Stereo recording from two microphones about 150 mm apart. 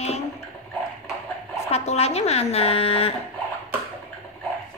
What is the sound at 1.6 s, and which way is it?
Speech, 45° left (ahead or behind).